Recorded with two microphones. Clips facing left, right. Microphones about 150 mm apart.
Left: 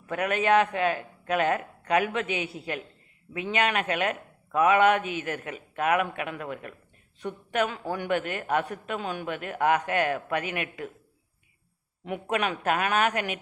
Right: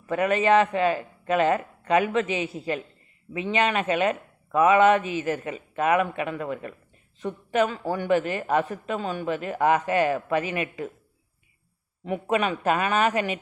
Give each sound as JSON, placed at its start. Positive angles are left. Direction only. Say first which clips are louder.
{"t": 0.0, "sound": "a woman's voice", "louder": "right 4 dB", "side_deg": 0}
{"t": 12.0, "sound": "a woman's voice", "louder": "right 4 dB", "side_deg": 0}